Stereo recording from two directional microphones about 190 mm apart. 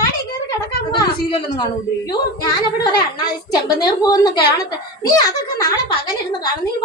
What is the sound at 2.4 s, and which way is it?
A woman's voice, 20° left (ahead or behind).